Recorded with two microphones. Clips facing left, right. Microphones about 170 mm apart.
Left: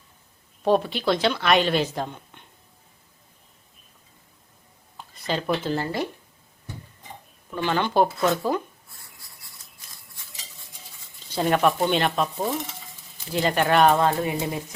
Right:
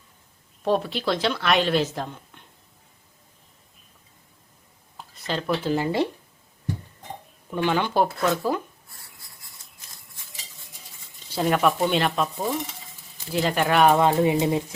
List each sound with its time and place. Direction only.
0.6 s a woman's voice: centre (ahead or behind)
4.9 s a sound: centre (ahead or behind)
5.6 s speech: 15° right (ahead or behind)
7.5 s speech: 15° right (ahead or behind)
8.0 s a woman's voice: centre (ahead or behind)
11.3 s a woman's voice: centre (ahead or behind)
14.0 s speech: 20° right (ahead or behind)